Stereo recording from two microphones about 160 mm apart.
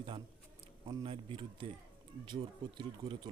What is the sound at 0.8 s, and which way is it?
Speech, 20° right (ahead or behind).